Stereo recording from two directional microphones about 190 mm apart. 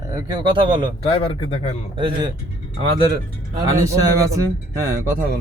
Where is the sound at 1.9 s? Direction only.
25° right (ahead or behind).